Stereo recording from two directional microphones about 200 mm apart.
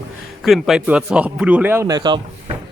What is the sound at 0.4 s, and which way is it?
A man's voice, centre (ahead or behind).